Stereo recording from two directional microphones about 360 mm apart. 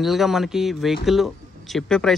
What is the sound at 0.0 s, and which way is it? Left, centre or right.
Speech, centre.